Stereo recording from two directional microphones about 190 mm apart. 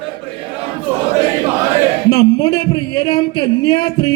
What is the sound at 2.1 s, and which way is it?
Speech, 25° left (ahead or behind).